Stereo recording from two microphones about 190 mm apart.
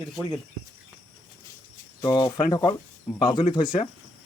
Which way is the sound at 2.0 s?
20° left (ahead or behind).